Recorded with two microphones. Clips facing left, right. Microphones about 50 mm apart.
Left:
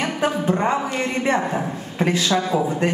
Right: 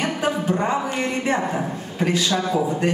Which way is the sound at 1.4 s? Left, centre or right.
Centre.